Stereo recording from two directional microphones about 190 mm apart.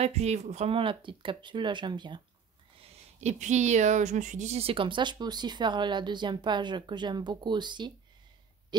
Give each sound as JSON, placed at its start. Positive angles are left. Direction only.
{"t": 0.0, "sound": "speech", "side_deg": -35}
{"t": 2.8, "sound": "speech", "side_deg": -35}